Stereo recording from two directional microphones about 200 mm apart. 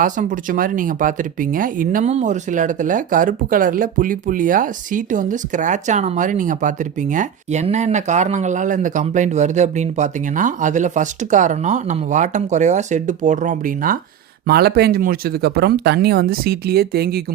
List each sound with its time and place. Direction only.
0.0 s speech: 40° right (ahead or behind)